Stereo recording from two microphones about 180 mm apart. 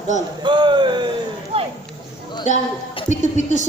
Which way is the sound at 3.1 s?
40° left (ahead or behind).